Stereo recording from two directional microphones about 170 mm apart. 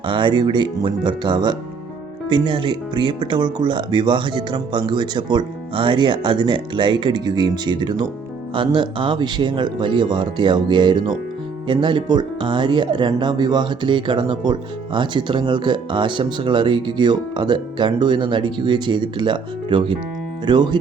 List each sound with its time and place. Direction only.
0.0 s speech: 30° right (ahead or behind)